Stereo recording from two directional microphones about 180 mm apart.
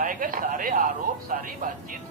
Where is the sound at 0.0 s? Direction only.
50° right (ahead or behind).